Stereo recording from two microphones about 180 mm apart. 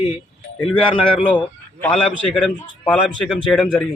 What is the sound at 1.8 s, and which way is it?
A man's voice, 5° left (ahead or behind).